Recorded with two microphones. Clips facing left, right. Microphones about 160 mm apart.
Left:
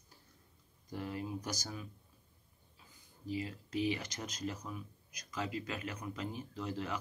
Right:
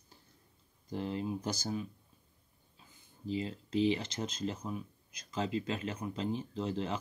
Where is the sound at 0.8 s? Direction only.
25° right (ahead or behind).